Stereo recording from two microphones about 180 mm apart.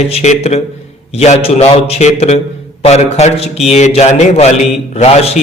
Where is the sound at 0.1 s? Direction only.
35° left (ahead or behind).